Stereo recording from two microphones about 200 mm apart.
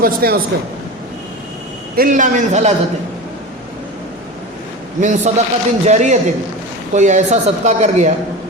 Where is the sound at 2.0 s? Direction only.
40° right (ahead or behind).